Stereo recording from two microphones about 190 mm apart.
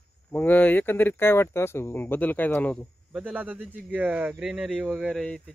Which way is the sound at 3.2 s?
5° right (ahead or behind).